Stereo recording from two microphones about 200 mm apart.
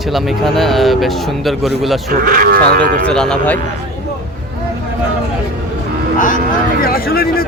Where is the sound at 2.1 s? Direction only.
45° right (ahead or behind).